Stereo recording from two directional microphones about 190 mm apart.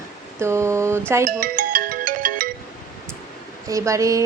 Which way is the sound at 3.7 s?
15° right (ahead or behind).